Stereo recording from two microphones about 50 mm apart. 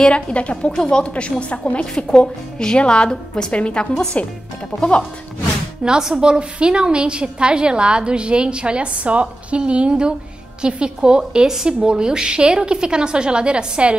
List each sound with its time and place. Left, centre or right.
0.0 s a woman's voice: left
5.9 s a woman's voice: centre